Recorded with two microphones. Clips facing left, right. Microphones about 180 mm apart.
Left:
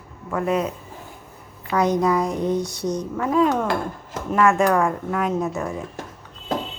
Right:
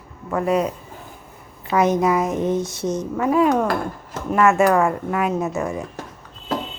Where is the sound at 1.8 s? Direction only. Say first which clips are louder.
Right 1 dB; 20° right (ahead or behind).